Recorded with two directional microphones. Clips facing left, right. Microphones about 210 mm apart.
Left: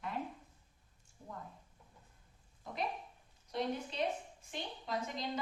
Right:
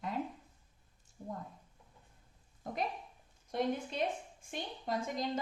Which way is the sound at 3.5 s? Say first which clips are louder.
Right 3 dB; 50° right (ahead or behind).